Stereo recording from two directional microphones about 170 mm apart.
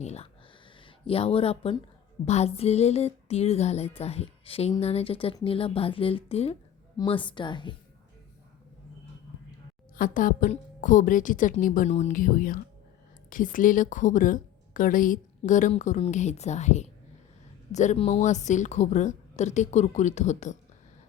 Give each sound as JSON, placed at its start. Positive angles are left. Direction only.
{"t": 0.0, "sound": "a woman's voice", "side_deg": 40}
{"t": 9.9, "sound": "a woman's voice", "side_deg": 50}